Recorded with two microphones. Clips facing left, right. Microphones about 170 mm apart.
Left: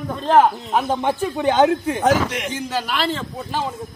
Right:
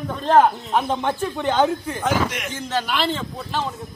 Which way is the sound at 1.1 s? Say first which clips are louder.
Left 3 dB; 15° left (ahead or behind).